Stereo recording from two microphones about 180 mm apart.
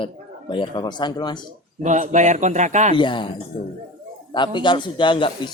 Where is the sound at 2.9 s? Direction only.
25° left (ahead or behind).